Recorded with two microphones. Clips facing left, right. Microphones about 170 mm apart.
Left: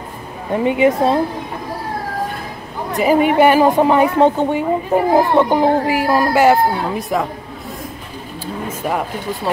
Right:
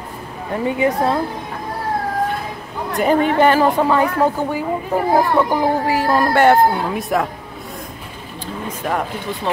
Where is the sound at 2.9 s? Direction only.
Centre (ahead or behind).